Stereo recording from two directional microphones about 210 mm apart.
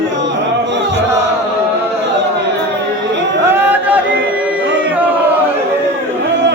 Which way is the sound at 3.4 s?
10° right (ahead or behind).